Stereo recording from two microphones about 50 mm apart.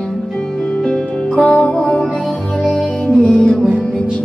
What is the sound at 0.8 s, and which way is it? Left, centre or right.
Music, centre.